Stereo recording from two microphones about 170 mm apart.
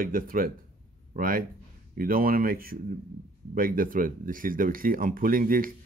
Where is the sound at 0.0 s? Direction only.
55° right (ahead or behind).